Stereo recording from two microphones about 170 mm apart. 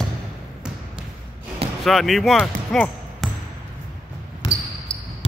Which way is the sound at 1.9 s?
Centre (ahead or behind).